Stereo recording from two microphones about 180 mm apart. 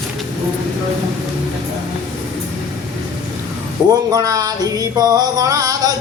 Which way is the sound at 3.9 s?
20° right (ahead or behind).